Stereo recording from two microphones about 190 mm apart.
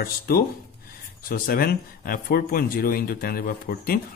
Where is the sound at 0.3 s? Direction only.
55° left (ahead or behind).